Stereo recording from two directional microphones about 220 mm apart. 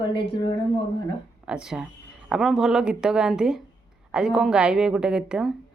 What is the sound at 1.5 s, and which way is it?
Speech, 5° right (ahead or behind).